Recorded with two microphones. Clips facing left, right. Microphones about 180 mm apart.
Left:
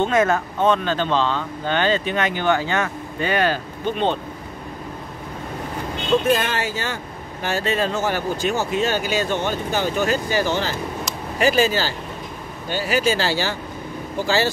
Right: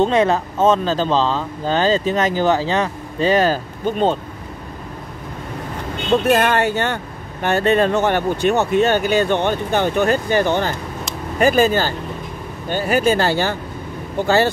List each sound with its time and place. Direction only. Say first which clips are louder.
0.0 s speech: right 3 dB; 30° right (ahead or behind)
6.3 s speech: right 6 dB; 65° right (ahead or behind)